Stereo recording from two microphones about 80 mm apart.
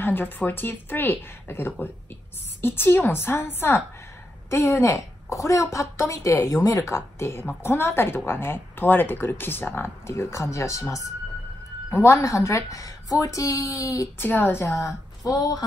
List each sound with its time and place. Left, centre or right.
0.0 s a woman's voice: left
14.1 s a woman's voice: left